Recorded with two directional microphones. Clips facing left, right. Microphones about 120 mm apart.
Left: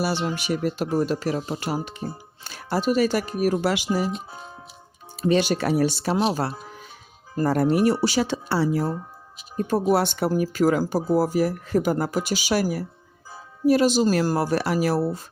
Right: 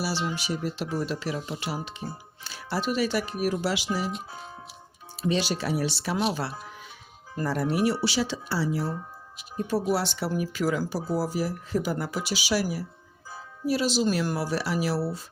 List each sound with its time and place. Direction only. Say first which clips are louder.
0.0 s speech: left 4 dB; 55° left (ahead or behind)
5.2 s speech: left 6 dB; 50° left (ahead or behind)
7.4 s speech: left 6 dB; 50° left (ahead or behind)